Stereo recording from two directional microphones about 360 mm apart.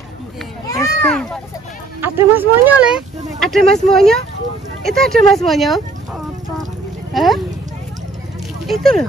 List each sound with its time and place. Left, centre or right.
0.7 s a sound: centre
2.0 s speech: centre
8.6 s speech: centre